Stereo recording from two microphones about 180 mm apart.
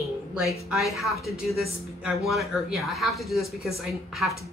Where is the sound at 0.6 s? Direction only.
Centre (ahead or behind).